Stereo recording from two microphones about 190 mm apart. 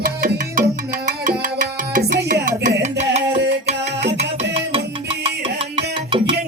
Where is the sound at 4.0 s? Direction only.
65° right (ahead or behind).